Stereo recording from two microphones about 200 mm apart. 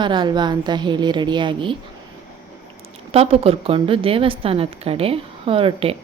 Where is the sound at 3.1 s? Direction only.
30° right (ahead or behind).